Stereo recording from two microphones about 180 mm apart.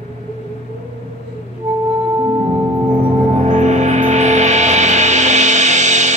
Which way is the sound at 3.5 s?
40° right (ahead or behind).